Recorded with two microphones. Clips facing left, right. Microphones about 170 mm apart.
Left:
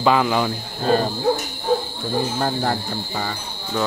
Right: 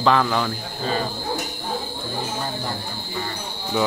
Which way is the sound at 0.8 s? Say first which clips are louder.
Left 6 dB; 50° left (ahead or behind).